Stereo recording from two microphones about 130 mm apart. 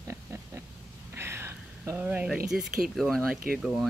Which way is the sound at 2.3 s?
5° right (ahead or behind).